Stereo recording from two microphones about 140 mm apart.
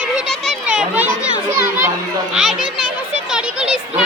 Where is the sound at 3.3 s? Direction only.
5° right (ahead or behind).